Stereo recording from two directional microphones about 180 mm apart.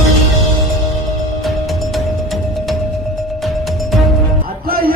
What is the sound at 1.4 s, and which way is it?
Music, centre (ahead or behind).